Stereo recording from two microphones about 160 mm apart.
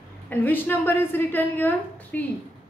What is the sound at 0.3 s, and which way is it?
A woman's voice, 10° left (ahead or behind).